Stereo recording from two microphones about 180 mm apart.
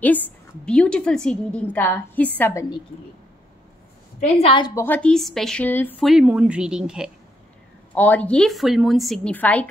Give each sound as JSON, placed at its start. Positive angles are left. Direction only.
{"t": 0.0, "sound": "a woman's voice", "side_deg": 10}
{"t": 4.4, "sound": "a woman's voice", "side_deg": 25}
{"t": 4.7, "sound": "a woman's voice", "side_deg": 10}
{"t": 6.0, "sound": "a woman's voice", "side_deg": -5}
{"t": 7.9, "sound": "a woman's voice", "side_deg": 10}